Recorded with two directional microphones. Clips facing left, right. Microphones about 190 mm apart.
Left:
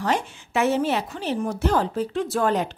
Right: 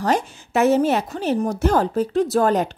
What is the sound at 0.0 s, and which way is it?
A woman's voice, 40° right (ahead or behind).